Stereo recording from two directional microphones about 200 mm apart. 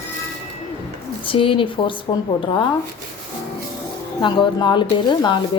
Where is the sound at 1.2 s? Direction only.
25° left (ahead or behind).